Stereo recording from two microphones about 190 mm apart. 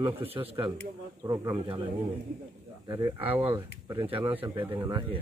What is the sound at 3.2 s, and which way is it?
Speech, 30° right (ahead or behind).